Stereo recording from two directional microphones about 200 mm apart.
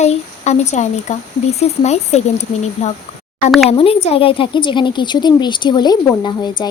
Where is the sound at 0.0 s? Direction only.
35° left (ahead or behind).